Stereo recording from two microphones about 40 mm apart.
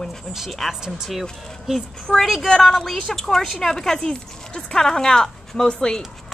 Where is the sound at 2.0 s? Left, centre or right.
Centre.